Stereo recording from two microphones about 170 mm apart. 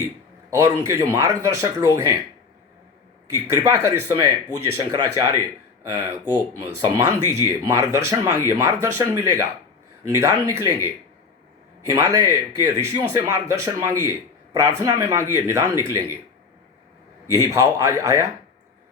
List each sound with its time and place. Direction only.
0.5 s speech: 15° right (ahead or behind)
3.2 s speech: 15° right (ahead or behind)
17.5 s speech: 15° right (ahead or behind)